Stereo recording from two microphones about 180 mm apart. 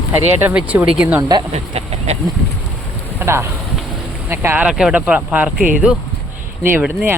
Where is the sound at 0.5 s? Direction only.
5° right (ahead or behind).